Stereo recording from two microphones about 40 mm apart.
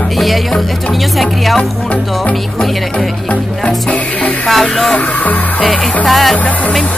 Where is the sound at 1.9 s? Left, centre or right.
Left.